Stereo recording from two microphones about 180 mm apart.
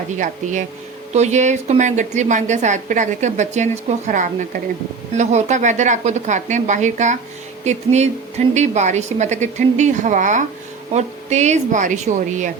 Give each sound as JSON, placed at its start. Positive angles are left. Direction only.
{"t": 1.1, "sound": "a woman's voice", "side_deg": -40}